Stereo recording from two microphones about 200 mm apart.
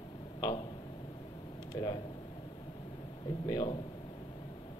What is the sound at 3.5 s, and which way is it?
Speech, 20° left (ahead or behind).